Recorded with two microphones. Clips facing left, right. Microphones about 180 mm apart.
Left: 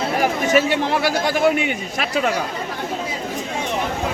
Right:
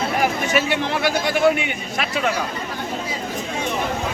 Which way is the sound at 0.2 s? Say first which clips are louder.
Left 5 dB; 40° left (ahead or behind).